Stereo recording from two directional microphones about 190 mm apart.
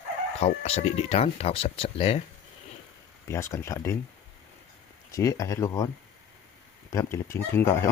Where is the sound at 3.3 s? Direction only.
15° left (ahead or behind).